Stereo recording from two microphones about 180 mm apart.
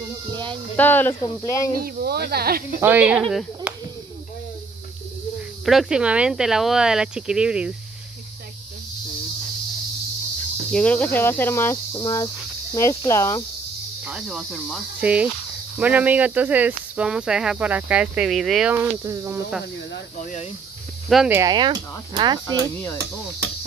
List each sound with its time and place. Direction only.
0.3 s a sound: 25° right (ahead or behind)
0.7 s speech: 10° left (ahead or behind)
1.8 s speech: 60° right (ahead or behind)
2.8 s speech: 10° right (ahead or behind)
5.7 s speech: 5° right (ahead or behind)
10.7 s speech: 5° left (ahead or behind)
14.0 s speech: 5° right (ahead or behind)
20.2 s speech: 45° left (ahead or behind)
21.1 s speech: 5° right (ahead or behind)
21.4 s speech: 25° right (ahead or behind)